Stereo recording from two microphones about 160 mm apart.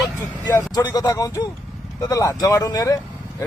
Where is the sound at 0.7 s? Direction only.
25° left (ahead or behind).